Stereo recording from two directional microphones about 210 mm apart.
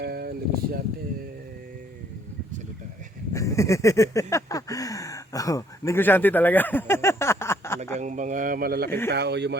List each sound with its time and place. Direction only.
0.0 s speech: 45° right (ahead or behind)
3.3 s a sound: 15° left (ahead or behind)
7.9 s speech: 35° right (ahead or behind); by 9.6 s 55° right (ahead or behind)